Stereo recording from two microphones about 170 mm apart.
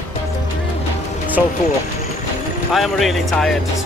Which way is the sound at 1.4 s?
5° right (ahead or behind).